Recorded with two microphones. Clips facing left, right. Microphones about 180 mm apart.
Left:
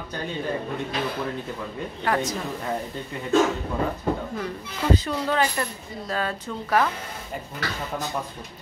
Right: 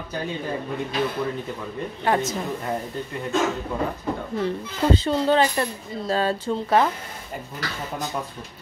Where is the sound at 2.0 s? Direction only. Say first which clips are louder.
Right 2 dB; 25° right (ahead or behind).